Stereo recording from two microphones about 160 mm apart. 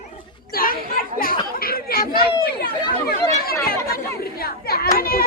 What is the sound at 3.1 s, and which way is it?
A child's voice, 70° left (ahead or behind).